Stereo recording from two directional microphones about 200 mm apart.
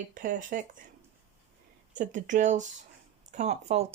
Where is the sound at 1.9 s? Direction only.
40° right (ahead or behind).